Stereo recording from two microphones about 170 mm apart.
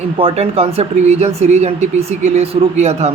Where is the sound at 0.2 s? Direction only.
35° right (ahead or behind).